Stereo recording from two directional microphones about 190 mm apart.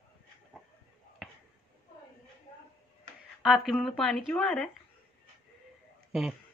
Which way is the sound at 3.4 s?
Centre (ahead or behind).